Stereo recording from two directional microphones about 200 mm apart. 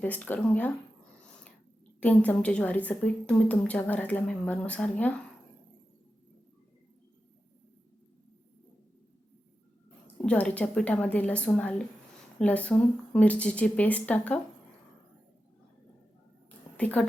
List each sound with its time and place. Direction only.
0.0 s a woman's voice: 10° left (ahead or behind)
2.0 s a woman's voice: 10° left (ahead or behind)
10.2 s a woman's voice: 5° left (ahead or behind)
16.7 s a woman's voice: 5° left (ahead or behind)